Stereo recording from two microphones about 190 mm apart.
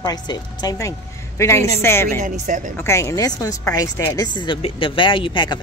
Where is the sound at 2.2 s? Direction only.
40° right (ahead or behind).